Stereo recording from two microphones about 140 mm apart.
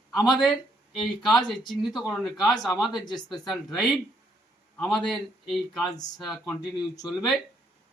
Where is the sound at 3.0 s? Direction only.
30° left (ahead or behind).